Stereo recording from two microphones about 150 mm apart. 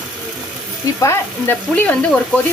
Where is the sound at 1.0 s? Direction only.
15° left (ahead or behind).